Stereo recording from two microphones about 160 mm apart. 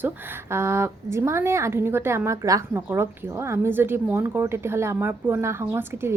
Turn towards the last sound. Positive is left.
turn(degrees=-15)  # may be behind; listen again after turning